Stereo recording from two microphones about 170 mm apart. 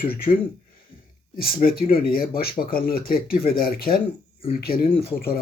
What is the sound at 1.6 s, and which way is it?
Speech, 60° left (ahead or behind).